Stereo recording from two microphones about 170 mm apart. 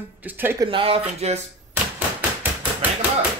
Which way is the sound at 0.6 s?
30° right (ahead or behind).